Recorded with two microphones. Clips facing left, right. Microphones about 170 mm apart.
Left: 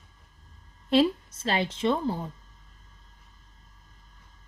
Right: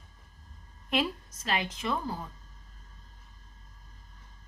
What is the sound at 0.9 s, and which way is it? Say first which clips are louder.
A woman's voice: left 8 dB; 30° left (ahead or behind).